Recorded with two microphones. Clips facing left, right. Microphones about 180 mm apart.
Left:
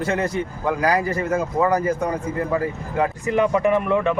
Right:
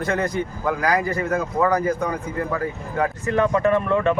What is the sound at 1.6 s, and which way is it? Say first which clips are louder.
Speech: even; 10° left (ahead or behind).